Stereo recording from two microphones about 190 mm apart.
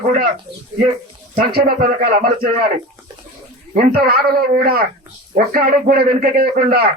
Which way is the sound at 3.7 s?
50° right (ahead or behind).